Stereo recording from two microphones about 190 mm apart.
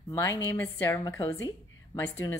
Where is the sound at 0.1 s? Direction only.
15° left (ahead or behind).